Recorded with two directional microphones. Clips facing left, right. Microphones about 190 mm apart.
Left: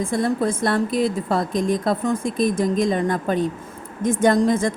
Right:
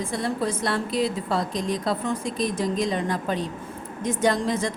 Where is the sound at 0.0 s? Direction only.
50° left (ahead or behind).